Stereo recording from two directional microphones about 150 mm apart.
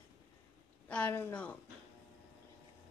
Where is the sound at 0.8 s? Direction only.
10° left (ahead or behind).